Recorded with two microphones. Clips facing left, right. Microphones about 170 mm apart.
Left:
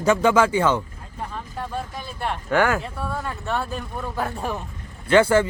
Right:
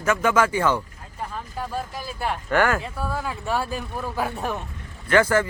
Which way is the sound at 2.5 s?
15° left (ahead or behind).